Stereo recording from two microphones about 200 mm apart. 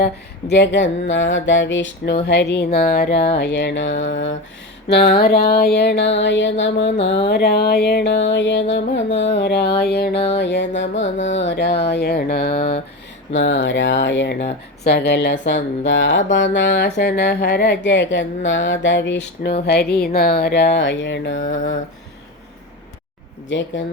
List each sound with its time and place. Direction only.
0.0 s speech: 55° left (ahead or behind)
4.9 s speech: 55° left (ahead or behind)
13.3 s speech: 60° left (ahead or behind)
23.5 s speech: 65° left (ahead or behind)